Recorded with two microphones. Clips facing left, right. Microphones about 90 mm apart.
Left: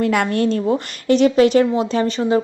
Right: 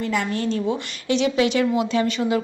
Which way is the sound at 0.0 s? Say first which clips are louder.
Left 6 dB; 60° left (ahead or behind).